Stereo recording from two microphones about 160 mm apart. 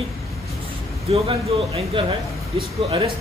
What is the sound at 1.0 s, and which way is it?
Speech, 40° right (ahead or behind).